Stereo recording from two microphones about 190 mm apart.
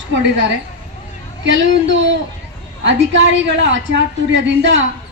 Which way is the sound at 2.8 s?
70° right (ahead or behind).